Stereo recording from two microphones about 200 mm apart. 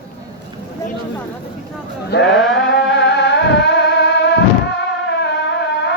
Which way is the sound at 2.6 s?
60° left (ahead or behind).